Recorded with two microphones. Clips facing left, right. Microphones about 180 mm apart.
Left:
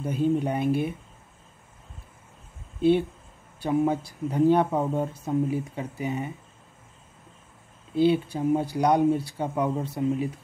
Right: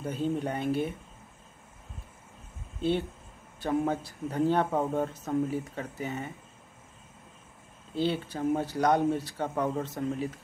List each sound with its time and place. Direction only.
0.0 s speech: 10° left (ahead or behind)
3.6 s speech: 10° left (ahead or behind)
7.9 s speech: 10° left (ahead or behind)